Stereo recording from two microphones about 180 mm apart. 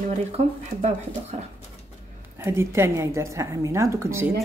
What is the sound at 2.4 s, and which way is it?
A woman's voice, 15° right (ahead or behind).